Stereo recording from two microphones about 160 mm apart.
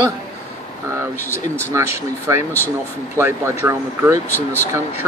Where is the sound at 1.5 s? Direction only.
15° right (ahead or behind).